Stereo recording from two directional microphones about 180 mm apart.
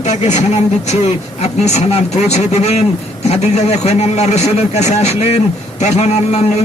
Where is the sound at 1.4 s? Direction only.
35° left (ahead or behind).